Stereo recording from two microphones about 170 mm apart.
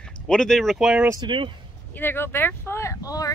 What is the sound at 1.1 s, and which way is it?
Speech, 25° right (ahead or behind).